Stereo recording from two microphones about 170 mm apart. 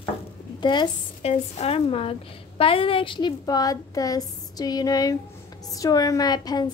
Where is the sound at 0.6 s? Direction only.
25° left (ahead or behind).